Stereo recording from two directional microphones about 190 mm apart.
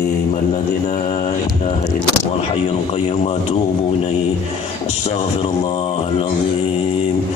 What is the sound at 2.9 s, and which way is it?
Speech, 30° left (ahead or behind).